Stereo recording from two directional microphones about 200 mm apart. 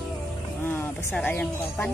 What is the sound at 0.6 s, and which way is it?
Speech, 10° left (ahead or behind).